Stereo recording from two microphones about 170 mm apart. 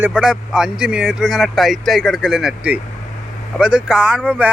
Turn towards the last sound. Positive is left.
turn(degrees=-5)  # may be behind; listen again after turning